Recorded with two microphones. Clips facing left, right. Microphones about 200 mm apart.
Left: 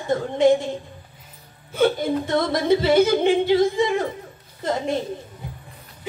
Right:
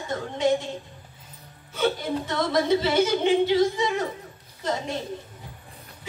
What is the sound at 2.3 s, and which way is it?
Speech, 55° left (ahead or behind).